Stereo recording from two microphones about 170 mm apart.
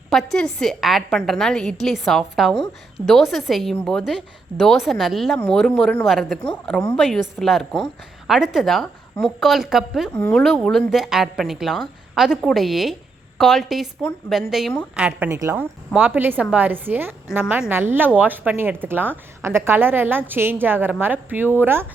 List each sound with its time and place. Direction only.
0.1 s a woman's voice: centre (ahead or behind)
14.9 s a woman's voice: 10° right (ahead or behind)